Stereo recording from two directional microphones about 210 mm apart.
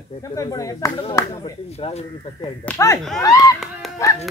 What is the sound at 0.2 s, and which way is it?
Speech, 15° left (ahead or behind).